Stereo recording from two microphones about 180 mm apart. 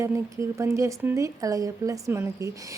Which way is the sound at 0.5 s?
15° right (ahead or behind).